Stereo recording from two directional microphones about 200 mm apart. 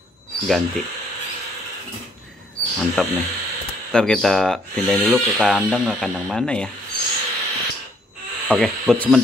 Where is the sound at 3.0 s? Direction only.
Centre (ahead or behind).